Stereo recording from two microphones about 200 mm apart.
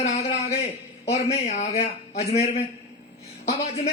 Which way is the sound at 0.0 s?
30° left (ahead or behind).